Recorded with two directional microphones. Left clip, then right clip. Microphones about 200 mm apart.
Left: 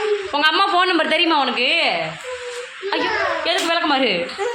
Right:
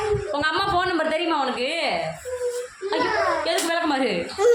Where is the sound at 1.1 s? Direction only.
30° left (ahead or behind).